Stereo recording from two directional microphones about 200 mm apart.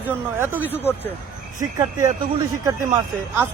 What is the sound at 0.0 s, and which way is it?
Speech, 10° right (ahead or behind).